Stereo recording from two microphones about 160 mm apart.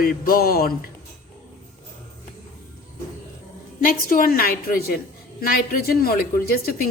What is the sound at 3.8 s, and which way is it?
A woman's voice, 65° left (ahead or behind).